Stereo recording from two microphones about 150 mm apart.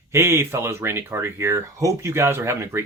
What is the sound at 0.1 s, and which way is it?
Speech, 15° right (ahead or behind).